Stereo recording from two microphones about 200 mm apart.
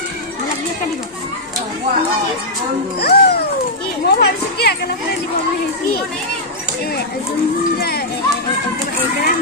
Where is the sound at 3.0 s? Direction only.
55° left (ahead or behind).